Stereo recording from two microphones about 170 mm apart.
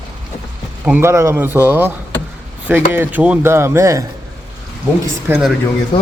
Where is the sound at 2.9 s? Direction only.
10° right (ahead or behind).